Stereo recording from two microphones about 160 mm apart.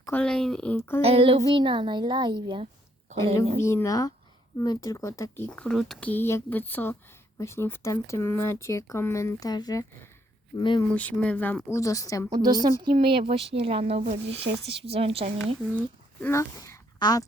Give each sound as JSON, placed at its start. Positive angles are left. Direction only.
{"t": 0.1, "sound": "speech", "side_deg": 5}
{"t": 1.0, "sound": "a woman's voice", "side_deg": -35}
{"t": 3.6, "sound": "speech", "side_deg": 15}
{"t": 5.5, "sound": "speech", "side_deg": 5}
{"t": 10.8, "sound": "speech", "side_deg": 10}
{"t": 12.3, "sound": "a woman's voice", "side_deg": -25}
{"t": 16.2, "sound": "speech", "side_deg": 15}